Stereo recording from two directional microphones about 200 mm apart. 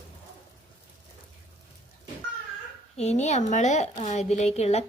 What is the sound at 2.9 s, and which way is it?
Speech, 35° left (ahead or behind).